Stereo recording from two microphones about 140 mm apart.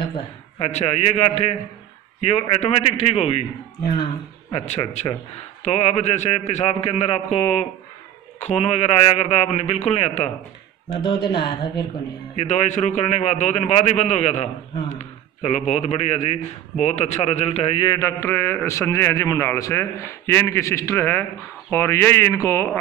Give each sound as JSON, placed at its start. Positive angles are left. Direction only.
{"t": 0.6, "sound": "a man's voice", "side_deg": 50}
{"t": 10.9, "sound": "speech", "side_deg": 30}
{"t": 12.4, "sound": "a man's voice", "side_deg": 55}
{"t": 17.8, "sound": "a man's voice", "side_deg": 25}
{"t": 18.2, "sound": "a man's voice", "side_deg": 15}